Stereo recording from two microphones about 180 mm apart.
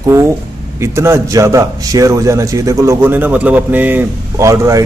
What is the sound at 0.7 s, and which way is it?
A man's voice, 15° right (ahead or behind).